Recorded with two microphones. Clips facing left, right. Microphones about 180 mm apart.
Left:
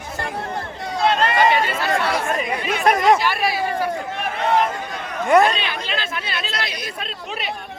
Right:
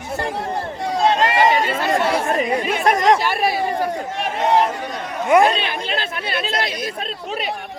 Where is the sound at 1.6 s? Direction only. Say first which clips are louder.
Right 3 dB; 30° right (ahead or behind).